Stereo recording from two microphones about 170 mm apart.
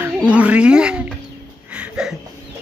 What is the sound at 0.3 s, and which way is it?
Speech, 5° right (ahead or behind).